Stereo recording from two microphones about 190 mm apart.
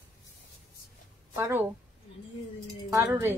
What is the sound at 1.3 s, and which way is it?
Speech, 10° right (ahead or behind).